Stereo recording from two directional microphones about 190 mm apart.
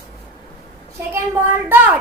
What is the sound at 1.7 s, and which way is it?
Speech, 10° right (ahead or behind).